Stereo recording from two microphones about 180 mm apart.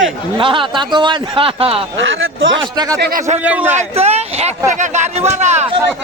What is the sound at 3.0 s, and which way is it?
Speech, 50° right (ahead or behind).